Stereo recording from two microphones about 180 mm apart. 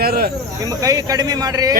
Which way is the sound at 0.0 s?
55° right (ahead or behind).